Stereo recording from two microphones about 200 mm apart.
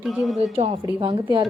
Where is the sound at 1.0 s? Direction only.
20° right (ahead or behind).